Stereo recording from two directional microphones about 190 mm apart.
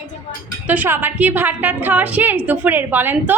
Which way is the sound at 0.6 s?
10° right (ahead or behind).